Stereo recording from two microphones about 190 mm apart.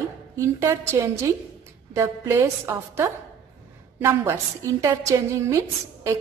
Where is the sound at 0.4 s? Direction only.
15° right (ahead or behind).